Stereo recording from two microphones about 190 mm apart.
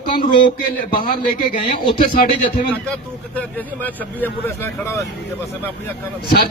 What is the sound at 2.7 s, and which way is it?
Speech, 5° left (ahead or behind).